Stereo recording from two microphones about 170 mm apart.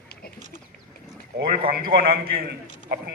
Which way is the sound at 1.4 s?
60° right (ahead or behind).